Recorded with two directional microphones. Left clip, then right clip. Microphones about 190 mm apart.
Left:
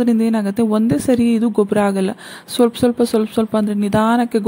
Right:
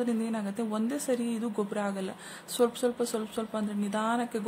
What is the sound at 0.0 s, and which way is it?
Speech, 40° left (ahead or behind).